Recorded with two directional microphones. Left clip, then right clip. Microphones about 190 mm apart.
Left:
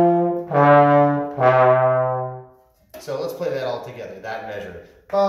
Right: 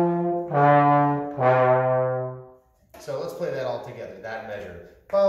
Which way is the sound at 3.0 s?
Centre (ahead or behind).